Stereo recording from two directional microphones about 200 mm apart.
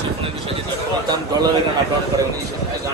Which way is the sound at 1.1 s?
20° right (ahead or behind).